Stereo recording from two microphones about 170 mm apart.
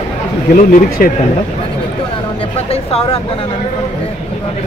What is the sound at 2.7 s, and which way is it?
Speech, 35° left (ahead or behind).